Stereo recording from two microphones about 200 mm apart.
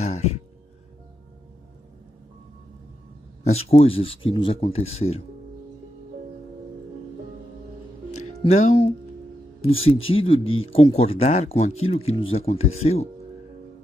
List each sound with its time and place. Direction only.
0.0 s a sound: 35° left (ahead or behind)
3.6 s speech: 30° left (ahead or behind)
8.4 s speech: 35° left (ahead or behind)